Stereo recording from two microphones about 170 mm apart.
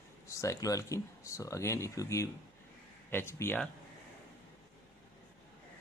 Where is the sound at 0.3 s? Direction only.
20° left (ahead or behind).